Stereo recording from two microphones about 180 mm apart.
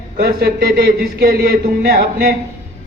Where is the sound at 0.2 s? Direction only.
60° right (ahead or behind).